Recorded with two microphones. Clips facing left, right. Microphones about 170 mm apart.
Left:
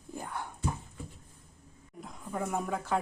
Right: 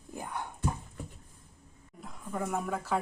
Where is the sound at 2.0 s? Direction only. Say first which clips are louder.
Even; centre (ahead or behind).